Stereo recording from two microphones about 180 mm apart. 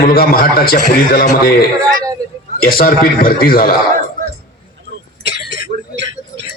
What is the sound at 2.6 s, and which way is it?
A man's voice, 55° left (ahead or behind).